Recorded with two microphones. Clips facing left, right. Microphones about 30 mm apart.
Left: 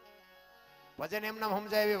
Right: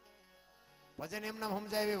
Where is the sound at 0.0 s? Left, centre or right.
Left.